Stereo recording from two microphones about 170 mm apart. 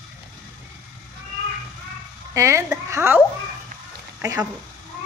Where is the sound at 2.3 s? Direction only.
15° right (ahead or behind).